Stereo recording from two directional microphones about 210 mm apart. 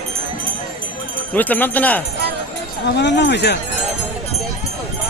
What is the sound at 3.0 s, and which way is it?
Speech, 55° left (ahead or behind).